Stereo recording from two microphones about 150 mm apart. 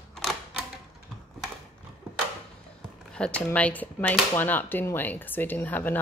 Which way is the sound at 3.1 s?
10° left (ahead or behind).